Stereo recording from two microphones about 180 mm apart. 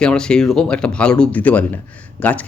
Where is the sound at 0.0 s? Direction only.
5° left (ahead or behind).